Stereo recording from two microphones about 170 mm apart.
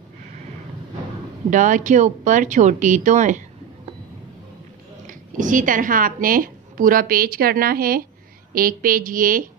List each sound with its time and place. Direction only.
1.5 s speech: 50° right (ahead or behind)
5.0 s speech: 50° right (ahead or behind)